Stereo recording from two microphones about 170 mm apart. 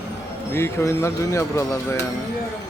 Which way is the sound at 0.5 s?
15° left (ahead or behind).